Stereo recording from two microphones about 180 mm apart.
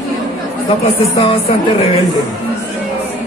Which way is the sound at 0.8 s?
35° left (ahead or behind).